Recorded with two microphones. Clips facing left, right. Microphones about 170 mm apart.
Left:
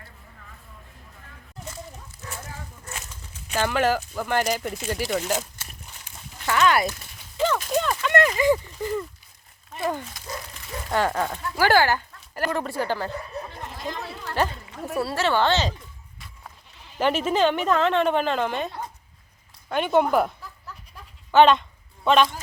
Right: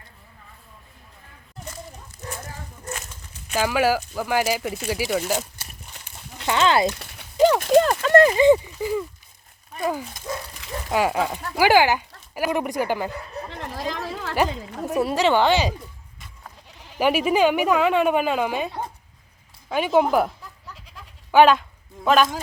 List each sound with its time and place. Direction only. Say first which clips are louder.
3.5 s speech: right 2 dB; 10° right (ahead or behind)
6.4 s a sound: right 2 dB; 25° right (ahead or behind)
7.5 s speech: right 8 dB; 60° right (ahead or behind)
7.9 s a sound: right 6 dB; 40° right (ahead or behind)
8.5 s speech: right 3 dB; 10° right (ahead or behind)
13.1 s a sound: even; 90° right
14.3 s speech: right 2 dB; 15° right (ahead or behind)
17.0 s speech: right 2 dB; 10° right (ahead or behind)
21.3 s speech: right 1 dB; 5° right (ahead or behind)